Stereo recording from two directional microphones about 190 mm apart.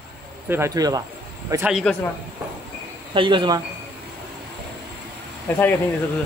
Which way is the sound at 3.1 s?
25° right (ahead or behind).